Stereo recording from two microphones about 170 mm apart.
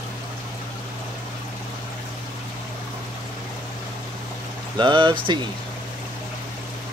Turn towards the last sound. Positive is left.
turn(degrees=-30)  # may be behind; listen again after turning